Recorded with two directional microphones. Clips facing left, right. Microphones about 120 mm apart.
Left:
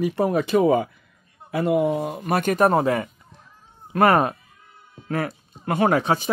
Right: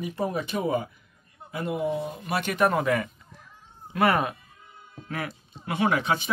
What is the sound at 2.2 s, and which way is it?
Speech, 45° left (ahead or behind).